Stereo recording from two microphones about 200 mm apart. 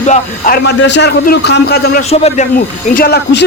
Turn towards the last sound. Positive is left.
turn(degrees=50)  # may be behind; listen again after turning